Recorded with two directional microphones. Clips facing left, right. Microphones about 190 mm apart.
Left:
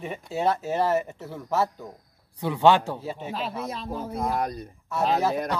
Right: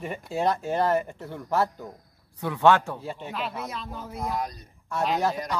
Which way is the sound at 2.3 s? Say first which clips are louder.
Left 1 dB; 15° left (ahead or behind).